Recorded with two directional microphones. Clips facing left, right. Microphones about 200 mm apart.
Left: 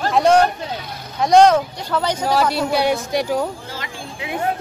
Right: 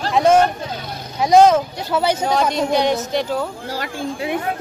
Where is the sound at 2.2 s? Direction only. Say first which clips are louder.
Even; 5° left (ahead or behind).